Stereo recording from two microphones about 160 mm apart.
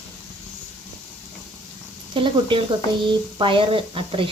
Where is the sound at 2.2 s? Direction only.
30° right (ahead or behind).